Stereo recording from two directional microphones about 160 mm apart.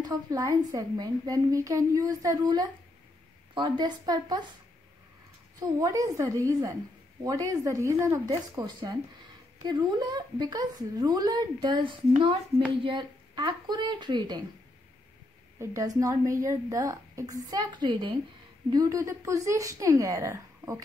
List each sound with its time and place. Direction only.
0.0 s a woman's voice: 25° right (ahead or behind)
5.6 s a woman's voice: 20° right (ahead or behind)
15.6 s a woman's voice: 20° right (ahead or behind)